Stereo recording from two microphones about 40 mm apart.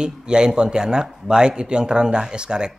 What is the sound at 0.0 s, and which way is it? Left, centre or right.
Speech, right.